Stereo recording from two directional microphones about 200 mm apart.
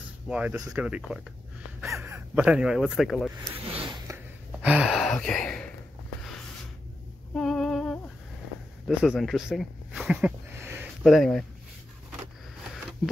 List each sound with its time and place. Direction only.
0.3 s speech: 5° right (ahead or behind)
3.6 s a sound: 30° right (ahead or behind)
4.6 s gasp: 5° right (ahead or behind)
7.3 s a sound: centre (ahead or behind)
8.8 s speech: centre (ahead or behind)
11.1 s speech: centre (ahead or behind)